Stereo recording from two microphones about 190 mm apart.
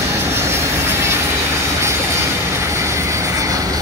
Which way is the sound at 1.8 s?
15° right (ahead or behind).